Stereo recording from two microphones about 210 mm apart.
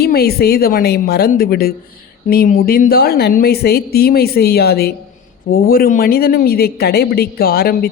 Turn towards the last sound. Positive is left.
turn(degrees=45)  # may be behind; listen again after turning